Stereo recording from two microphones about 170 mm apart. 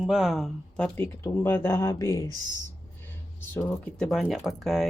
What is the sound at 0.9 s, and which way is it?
Speech, 15° left (ahead or behind).